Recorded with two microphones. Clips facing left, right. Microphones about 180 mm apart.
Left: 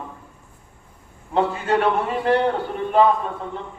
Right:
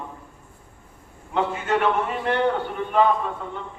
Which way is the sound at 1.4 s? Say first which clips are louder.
Left 3 dB; 35° left (ahead or behind).